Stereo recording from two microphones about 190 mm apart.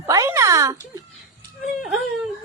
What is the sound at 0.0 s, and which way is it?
Music, 15° right (ahead or behind).